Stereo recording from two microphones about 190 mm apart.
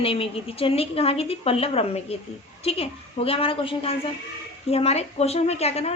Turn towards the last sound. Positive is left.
turn(degrees=35)  # may be behind; listen again after turning